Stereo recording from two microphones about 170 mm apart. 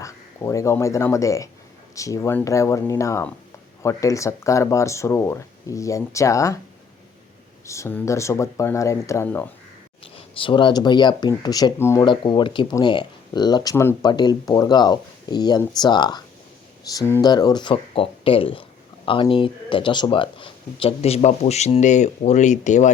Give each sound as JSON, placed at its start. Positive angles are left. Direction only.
{"t": 0.0, "sound": "speech", "side_deg": 20}
{"t": 7.7, "sound": "speech", "side_deg": 15}
{"t": 10.0, "sound": "speech", "side_deg": 30}